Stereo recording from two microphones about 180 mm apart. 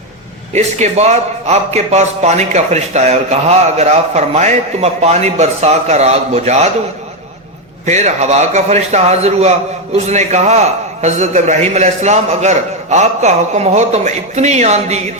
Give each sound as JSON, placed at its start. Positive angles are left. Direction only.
{"t": 0.5, "sound": "a man's voice", "side_deg": -40}
{"t": 7.9, "sound": "a man's voice", "side_deg": -40}